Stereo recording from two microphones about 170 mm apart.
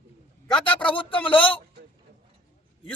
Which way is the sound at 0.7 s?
5° left (ahead or behind).